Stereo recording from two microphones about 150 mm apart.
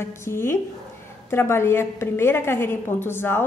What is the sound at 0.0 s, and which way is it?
A woman's voice, 15° left (ahead or behind).